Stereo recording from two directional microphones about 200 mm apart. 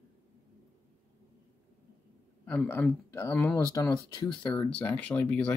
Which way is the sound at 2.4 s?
10° left (ahead or behind).